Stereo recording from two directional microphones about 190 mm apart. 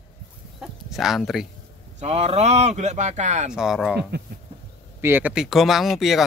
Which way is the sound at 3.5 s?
Centre (ahead or behind).